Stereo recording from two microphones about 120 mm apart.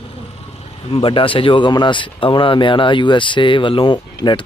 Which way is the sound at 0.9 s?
45° left (ahead or behind).